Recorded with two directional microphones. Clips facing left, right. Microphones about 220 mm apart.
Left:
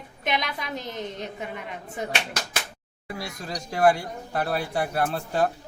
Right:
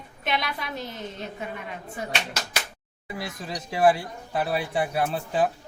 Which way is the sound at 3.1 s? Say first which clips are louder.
Right 1 dB; centre (ahead or behind).